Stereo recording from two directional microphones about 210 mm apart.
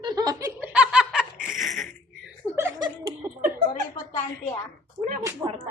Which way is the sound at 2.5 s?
15° right (ahead or behind).